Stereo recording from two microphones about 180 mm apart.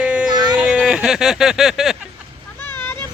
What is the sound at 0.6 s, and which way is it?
Speech, 5° right (ahead or behind).